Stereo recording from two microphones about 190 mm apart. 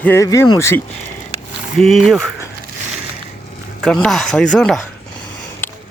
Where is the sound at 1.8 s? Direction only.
Centre (ahead or behind).